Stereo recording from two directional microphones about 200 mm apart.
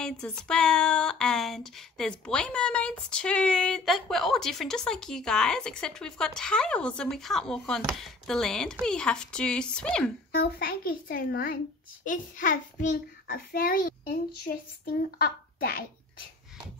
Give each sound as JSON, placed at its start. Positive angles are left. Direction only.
{"t": 0.0, "sound": "speech", "side_deg": 5}
{"t": 10.3, "sound": "a child's voice", "side_deg": 50}